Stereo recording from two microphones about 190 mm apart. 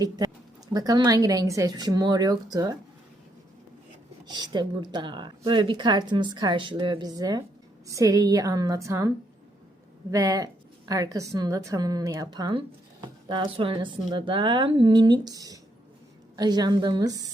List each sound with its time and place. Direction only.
0.7 s a woman's voice: 20° right (ahead or behind)
4.3 s a woman's voice: 20° right (ahead or behind)